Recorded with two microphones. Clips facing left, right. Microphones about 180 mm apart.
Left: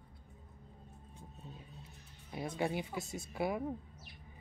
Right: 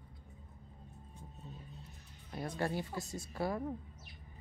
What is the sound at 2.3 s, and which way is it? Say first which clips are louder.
Speech: left 1 dB; 10° left (ahead or behind).